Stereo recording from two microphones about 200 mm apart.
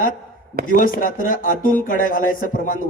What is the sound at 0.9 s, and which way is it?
A man's voice, 45° left (ahead or behind).